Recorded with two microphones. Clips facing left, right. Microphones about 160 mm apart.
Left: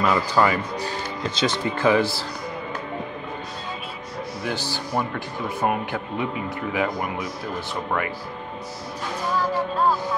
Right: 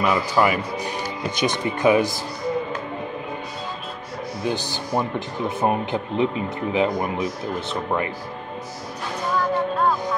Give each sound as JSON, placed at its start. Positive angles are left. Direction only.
{"t": 0.0, "sound": "speech", "side_deg": -15}
{"t": 4.5, "sound": "speech", "side_deg": -20}